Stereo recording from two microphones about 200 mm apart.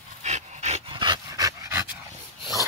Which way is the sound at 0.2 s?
35° right (ahead or behind).